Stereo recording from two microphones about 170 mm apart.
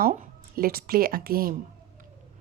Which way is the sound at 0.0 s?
55° right (ahead or behind).